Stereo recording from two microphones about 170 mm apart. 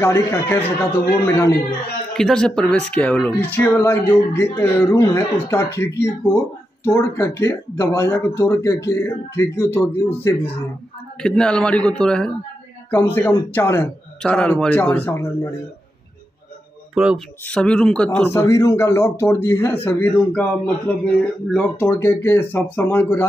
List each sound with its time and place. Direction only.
0.0 s speech: 15° left (ahead or behind)
2.1 s speech: 5° left (ahead or behind)
16.9 s speech: 5° right (ahead or behind); by 23.2 s 15° left (ahead or behind)